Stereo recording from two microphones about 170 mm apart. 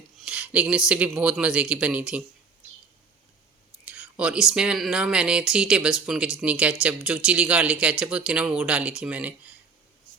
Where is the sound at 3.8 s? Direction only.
5° right (ahead or behind).